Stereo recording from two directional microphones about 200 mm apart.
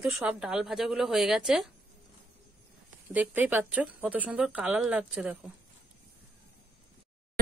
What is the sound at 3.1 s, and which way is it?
Speech, 10° right (ahead or behind).